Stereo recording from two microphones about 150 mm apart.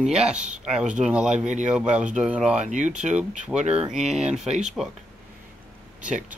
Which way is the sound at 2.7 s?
55° right (ahead or behind).